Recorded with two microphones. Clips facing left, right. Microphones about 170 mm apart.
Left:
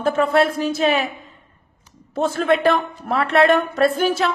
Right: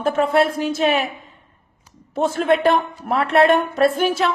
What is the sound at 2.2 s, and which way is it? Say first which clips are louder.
Speech: right 1 dB; 35° left (ahead or behind).